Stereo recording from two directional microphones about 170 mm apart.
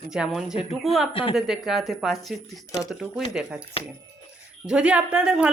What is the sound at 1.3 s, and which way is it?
Speech, centre (ahead or behind).